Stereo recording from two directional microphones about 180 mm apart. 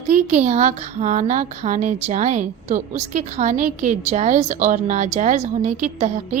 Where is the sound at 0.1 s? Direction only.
40° right (ahead or behind).